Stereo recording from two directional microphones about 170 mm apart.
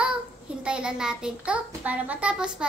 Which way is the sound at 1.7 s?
10° right (ahead or behind).